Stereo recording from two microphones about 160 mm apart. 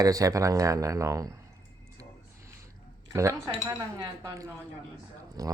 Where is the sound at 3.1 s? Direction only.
20° right (ahead or behind).